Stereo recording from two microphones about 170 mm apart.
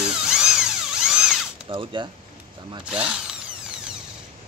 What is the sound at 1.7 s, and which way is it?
Speech, 30° right (ahead or behind).